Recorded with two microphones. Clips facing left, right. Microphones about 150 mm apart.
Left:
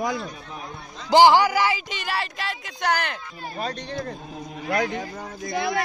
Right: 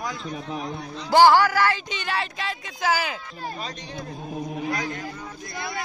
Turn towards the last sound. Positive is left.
turn(degrees=90)